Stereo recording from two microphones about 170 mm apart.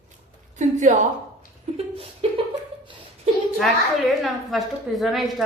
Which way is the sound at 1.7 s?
35° right (ahead or behind).